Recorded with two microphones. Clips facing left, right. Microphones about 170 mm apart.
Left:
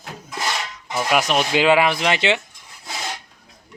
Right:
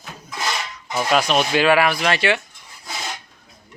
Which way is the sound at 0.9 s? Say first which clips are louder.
Right 1 dB; 10° left (ahead or behind).